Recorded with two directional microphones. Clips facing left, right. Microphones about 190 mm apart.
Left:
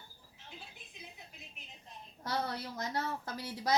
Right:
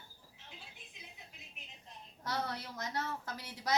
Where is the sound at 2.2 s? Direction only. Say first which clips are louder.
Left 2 dB; 30° left (ahead or behind).